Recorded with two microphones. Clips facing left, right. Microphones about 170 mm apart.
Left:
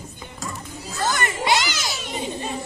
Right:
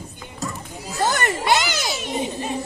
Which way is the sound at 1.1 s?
55° right (ahead or behind).